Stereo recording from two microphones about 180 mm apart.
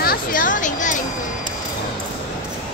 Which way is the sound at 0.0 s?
55° left (ahead or behind).